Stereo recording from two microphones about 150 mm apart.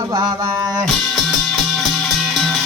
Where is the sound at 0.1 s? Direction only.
25° right (ahead or behind).